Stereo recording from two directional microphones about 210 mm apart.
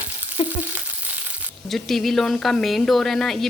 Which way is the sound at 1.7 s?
Centre (ahead or behind).